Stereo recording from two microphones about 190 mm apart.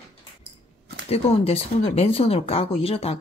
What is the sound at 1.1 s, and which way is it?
Speech, 30° left (ahead or behind).